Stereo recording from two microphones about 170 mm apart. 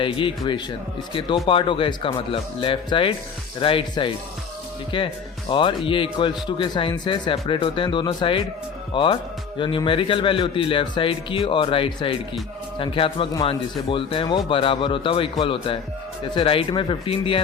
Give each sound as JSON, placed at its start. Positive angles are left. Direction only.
{"t": 0.0, "sound": "speech", "side_deg": 30}